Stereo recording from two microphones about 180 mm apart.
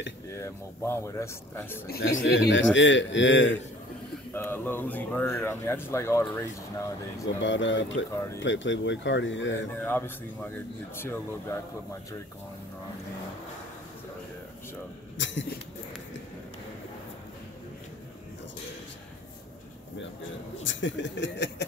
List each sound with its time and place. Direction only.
0.4 s speech: 15° left (ahead or behind)
1.9 s a man's voice: 75° left (ahead or behind)
4.3 s speech: 10° left (ahead or behind)
7.4 s a man's voice: 90° left
9.8 s speech: 10° left (ahead or behind)
15.1 s a sound: 90° left
20.6 s speech: 85° left